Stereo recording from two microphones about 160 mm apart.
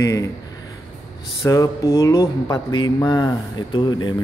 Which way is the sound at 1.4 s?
20° left (ahead or behind).